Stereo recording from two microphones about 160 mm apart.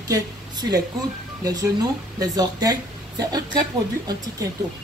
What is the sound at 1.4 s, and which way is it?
Speech, 25° right (ahead or behind).